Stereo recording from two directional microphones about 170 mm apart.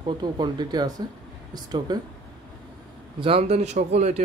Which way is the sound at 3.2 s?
35° right (ahead or behind).